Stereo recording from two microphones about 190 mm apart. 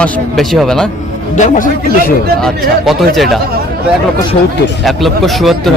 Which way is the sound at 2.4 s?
Centre (ahead or behind).